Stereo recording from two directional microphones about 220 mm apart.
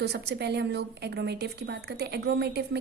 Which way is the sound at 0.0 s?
50° right (ahead or behind).